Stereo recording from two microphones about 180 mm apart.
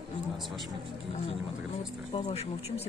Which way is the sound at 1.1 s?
35° left (ahead or behind).